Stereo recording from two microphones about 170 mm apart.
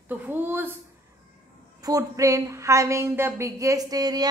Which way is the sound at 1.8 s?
20° right (ahead or behind).